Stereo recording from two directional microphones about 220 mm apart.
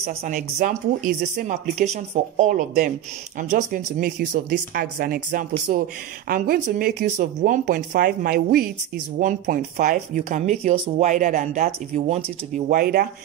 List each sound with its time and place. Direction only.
0.2 s speech: 40° right (ahead or behind)